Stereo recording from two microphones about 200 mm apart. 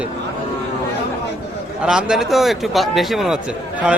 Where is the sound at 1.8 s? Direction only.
5° right (ahead or behind).